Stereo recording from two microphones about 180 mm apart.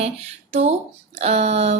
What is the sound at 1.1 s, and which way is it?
Speech, 35° right (ahead or behind).